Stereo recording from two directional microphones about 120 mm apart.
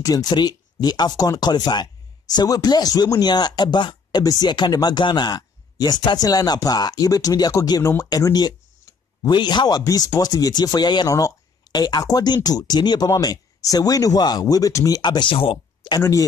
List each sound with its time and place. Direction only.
0.0 s speech: 30° left (ahead or behind)
16.0 s speech: 25° left (ahead or behind)